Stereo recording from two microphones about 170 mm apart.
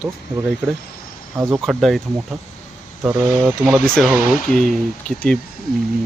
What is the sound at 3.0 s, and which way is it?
Speech, 5° right (ahead or behind).